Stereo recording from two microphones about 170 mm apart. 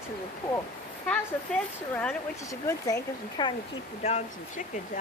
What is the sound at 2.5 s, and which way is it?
Speech, 20° left (ahead or behind).